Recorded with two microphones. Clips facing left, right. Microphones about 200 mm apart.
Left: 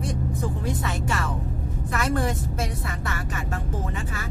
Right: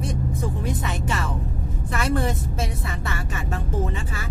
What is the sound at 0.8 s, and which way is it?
Speech, 20° right (ahead or behind).